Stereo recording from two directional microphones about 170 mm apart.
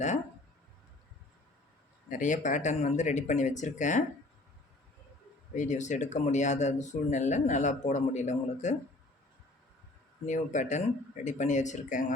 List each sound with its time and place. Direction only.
2.0 s speech: 50° left (ahead or behind)
5.5 s speech: 45° left (ahead or behind)
10.2 s speech: 45° left (ahead or behind)